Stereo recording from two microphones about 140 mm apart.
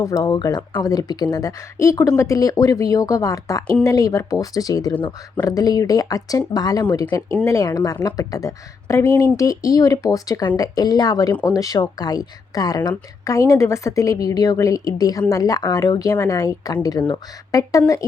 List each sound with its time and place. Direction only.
0.0 s speech: 25° left (ahead or behind)